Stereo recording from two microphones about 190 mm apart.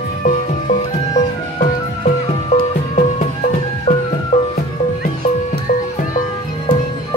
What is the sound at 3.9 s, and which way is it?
Music, 40° left (ahead or behind).